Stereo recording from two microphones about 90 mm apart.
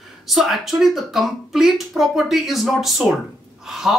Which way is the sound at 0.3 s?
5° right (ahead or behind).